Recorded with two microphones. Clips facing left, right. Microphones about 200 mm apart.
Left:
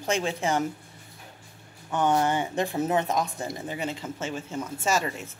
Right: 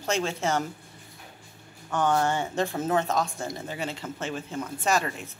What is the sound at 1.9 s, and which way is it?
Speech, 20° left (ahead or behind).